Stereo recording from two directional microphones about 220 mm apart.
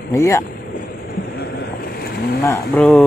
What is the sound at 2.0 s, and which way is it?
Boat, 45° left (ahead or behind).